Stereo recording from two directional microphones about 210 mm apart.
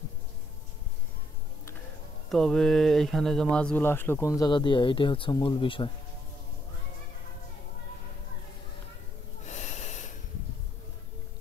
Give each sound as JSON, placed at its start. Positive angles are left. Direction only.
{"t": 2.3, "sound": "speech", "side_deg": 0}
{"t": 9.5, "sound": "snort", "side_deg": 35}